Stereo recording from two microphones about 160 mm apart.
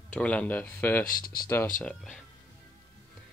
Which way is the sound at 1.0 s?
65° left (ahead or behind).